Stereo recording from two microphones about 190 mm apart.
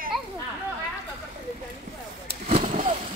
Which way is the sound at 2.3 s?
35° right (ahead or behind).